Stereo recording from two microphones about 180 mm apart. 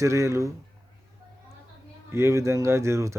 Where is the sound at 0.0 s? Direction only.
15° right (ahead or behind).